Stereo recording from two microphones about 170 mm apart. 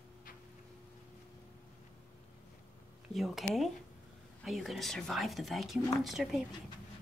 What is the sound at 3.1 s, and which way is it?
Speech, centre (ahead or behind).